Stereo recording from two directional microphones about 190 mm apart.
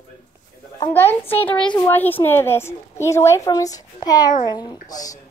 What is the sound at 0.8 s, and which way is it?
A woman's voice, 10° left (ahead or behind).